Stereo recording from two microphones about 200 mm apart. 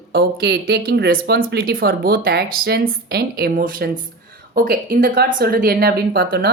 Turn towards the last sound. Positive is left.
turn(degrees=-50)  # may be behind; listen again after turning